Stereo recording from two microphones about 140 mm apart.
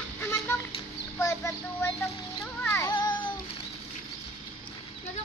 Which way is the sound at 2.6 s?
15° left (ahead or behind).